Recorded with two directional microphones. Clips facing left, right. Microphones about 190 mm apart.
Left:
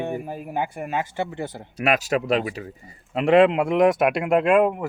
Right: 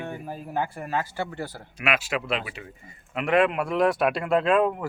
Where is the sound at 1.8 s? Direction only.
40° left (ahead or behind).